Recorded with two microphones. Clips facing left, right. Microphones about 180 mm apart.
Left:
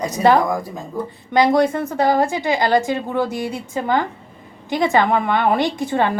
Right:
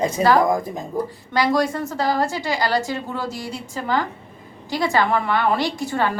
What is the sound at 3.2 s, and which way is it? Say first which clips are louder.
Speech: left 5 dB; 55° left (ahead or behind).